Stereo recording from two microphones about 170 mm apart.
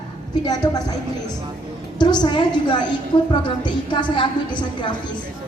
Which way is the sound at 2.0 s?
25° left (ahead or behind).